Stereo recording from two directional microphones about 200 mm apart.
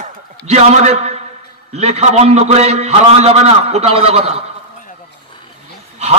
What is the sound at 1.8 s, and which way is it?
A man's voice, 35° right (ahead or behind).